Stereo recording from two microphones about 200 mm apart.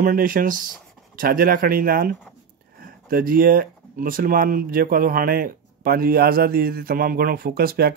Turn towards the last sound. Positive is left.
turn(degrees=-50)  # may be behind; listen again after turning